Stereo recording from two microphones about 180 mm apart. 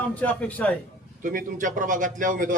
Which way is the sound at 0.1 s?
10° left (ahead or behind).